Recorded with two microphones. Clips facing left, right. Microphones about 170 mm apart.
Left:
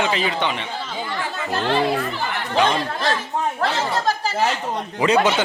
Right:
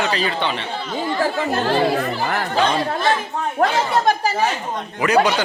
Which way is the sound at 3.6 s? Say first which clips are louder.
Right 7 dB; 55° right (ahead or behind).